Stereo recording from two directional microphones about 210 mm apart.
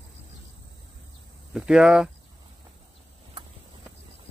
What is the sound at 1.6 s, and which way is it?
Speech, 5° right (ahead or behind).